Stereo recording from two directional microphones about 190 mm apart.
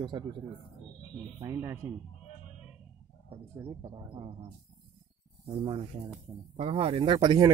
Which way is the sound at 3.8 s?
25° right (ahead or behind).